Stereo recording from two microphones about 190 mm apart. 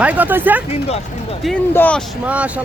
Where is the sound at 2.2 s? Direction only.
5° right (ahead or behind).